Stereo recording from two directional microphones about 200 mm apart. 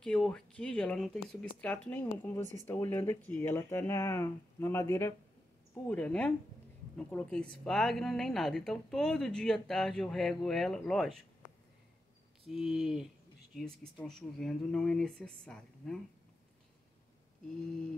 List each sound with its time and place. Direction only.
0.0 s a woman's voice: 5° left (ahead or behind)
12.4 s a woman's voice: centre (ahead or behind)